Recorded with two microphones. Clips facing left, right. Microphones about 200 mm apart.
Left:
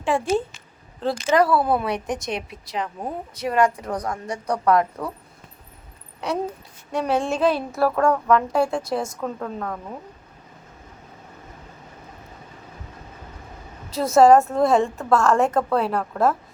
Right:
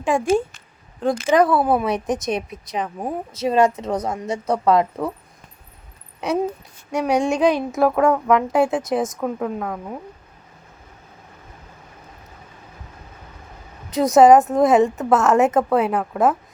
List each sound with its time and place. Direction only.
0.0 s a woman's voice: 15° right (ahead or behind)
6.1 s a sound: 20° right (ahead or behind)
7.1 s a woman's voice: 15° right (ahead or behind)
13.9 s speech: 15° right (ahead or behind)